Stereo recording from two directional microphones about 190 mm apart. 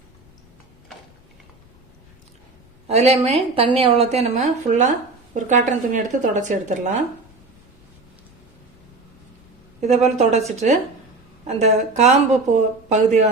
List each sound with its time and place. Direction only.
2.8 s speech: 35° right (ahead or behind)
9.8 s speech: 35° right (ahead or behind)